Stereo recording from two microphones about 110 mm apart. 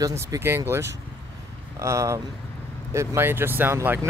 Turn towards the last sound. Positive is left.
turn(degrees=-20)  # may be behind; listen again after turning